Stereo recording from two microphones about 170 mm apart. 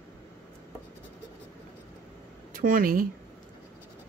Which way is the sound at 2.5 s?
55° right (ahead or behind).